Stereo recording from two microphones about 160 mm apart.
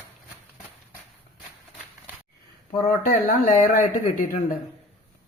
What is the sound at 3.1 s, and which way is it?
Speech, 55° left (ahead or behind).